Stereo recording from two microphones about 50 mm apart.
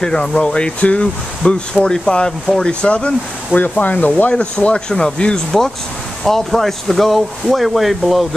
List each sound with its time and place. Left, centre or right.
0.0 s speech: centre; by 4.3 s left
4.3 s speech: left; by 8.3 s centre